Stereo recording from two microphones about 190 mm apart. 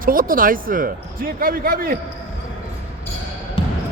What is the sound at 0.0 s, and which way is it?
Speech, 50° right (ahead or behind).